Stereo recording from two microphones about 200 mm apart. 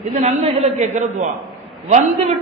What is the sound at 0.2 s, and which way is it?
A man's voice, 30° right (ahead or behind).